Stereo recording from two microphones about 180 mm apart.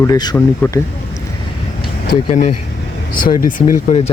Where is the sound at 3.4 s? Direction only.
45° left (ahead or behind).